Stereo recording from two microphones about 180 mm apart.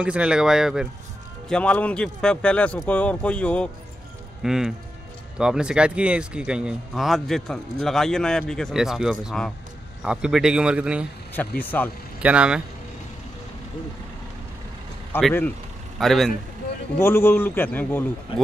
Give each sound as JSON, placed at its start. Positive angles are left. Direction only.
{"t": 0.0, "sound": "a man's voice", "side_deg": -5}
{"t": 11.3, "sound": "a man's voice", "side_deg": 10}
{"t": 12.2, "sound": "speech", "side_deg": -5}
{"t": 15.1, "sound": "a man's voice", "side_deg": 10}
{"t": 16.0, "sound": "speech", "side_deg": 0}
{"t": 17.0, "sound": "a man's voice", "side_deg": 10}
{"t": 18.3, "sound": "speech", "side_deg": 30}